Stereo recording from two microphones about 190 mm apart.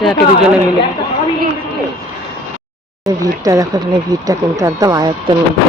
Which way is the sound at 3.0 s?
15° right (ahead or behind).